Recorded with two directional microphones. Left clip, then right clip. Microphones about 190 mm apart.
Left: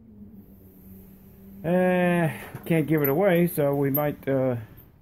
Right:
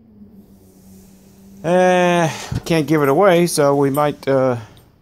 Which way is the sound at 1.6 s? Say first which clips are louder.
Right 9 dB; 25° right (ahead or behind).